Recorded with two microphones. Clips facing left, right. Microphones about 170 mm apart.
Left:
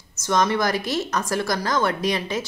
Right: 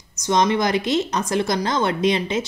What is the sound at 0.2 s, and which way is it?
Speech, 20° right (ahead or behind).